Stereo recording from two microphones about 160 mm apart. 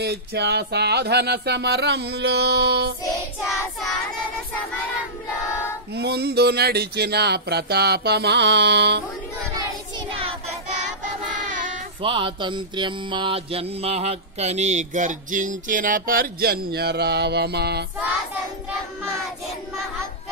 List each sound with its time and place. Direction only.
0.0 s speech: 90° right
5.9 s speech: 90° right
11.4 s child singing: 50° right (ahead or behind)
12.0 s mantra: 30° right (ahead or behind); by 17.8 s 90° right